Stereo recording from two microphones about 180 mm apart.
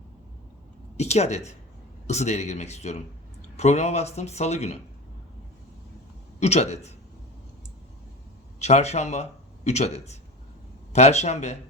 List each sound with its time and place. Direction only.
0.9 s speech: 35° left (ahead or behind)
6.4 s speech: 35° left (ahead or behind)
8.5 s speech: 40° left (ahead or behind)